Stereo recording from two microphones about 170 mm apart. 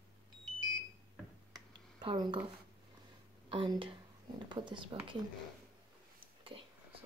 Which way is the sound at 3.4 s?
30° right (ahead or behind).